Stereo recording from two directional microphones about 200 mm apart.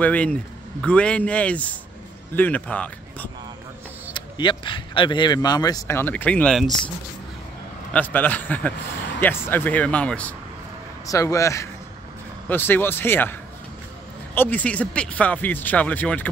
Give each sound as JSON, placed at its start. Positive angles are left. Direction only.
{"t": 0.0, "sound": "speech", "side_deg": 5}
{"t": 4.1, "sound": "speech", "side_deg": 25}
{"t": 7.9, "sound": "speech", "side_deg": 10}